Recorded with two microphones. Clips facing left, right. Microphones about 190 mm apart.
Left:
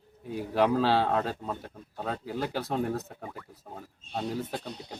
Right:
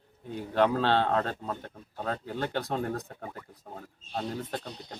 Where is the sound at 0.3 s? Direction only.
5° left (ahead or behind).